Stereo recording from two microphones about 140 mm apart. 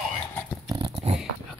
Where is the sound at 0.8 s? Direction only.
40° right (ahead or behind).